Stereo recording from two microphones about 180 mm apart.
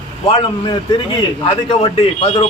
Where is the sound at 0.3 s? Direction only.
25° left (ahead or behind).